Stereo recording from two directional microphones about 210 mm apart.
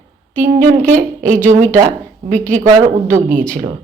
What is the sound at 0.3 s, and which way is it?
Speech, 35° right (ahead or behind).